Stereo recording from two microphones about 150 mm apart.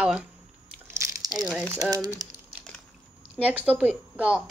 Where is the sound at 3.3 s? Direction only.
10° right (ahead or behind).